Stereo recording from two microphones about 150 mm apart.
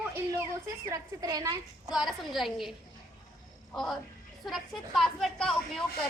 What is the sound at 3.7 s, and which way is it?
A woman's voice, 5° left (ahead or behind).